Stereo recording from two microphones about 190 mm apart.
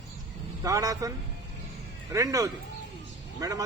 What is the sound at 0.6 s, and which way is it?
A man's voice, 15° right (ahead or behind).